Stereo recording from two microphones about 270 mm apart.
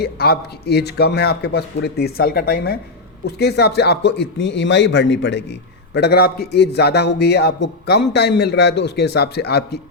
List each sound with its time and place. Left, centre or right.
0.0 s speech: left